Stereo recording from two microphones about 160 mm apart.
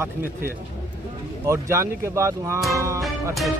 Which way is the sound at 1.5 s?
15° right (ahead or behind).